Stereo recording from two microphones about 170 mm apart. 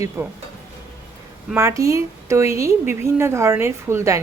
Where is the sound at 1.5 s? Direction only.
20° right (ahead or behind).